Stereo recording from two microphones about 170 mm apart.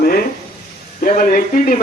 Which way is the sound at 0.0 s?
60° left (ahead or behind).